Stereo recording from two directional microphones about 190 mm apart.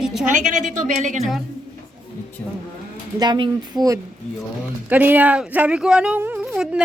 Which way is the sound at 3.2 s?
25° right (ahead or behind).